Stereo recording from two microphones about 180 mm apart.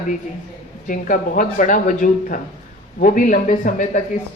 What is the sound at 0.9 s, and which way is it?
A woman's voice, 50° left (ahead or behind).